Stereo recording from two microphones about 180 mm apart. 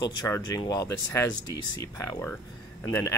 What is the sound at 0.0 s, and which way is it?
Speech, 20° left (ahead or behind).